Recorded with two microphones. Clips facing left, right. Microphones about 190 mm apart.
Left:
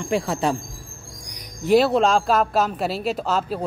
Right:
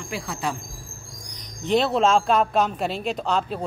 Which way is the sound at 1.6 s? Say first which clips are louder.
Left 3 dB; 5° left (ahead or behind).